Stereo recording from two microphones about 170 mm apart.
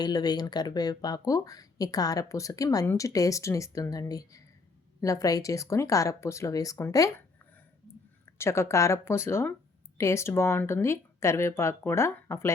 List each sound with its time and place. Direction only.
0.0 s speech: 25° left (ahead or behind)
8.4 s speech: 15° left (ahead or behind)